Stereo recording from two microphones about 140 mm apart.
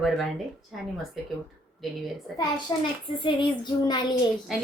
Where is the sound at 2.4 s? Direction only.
35° left (ahead or behind).